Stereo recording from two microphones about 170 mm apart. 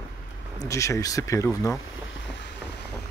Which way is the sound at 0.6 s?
15° left (ahead or behind).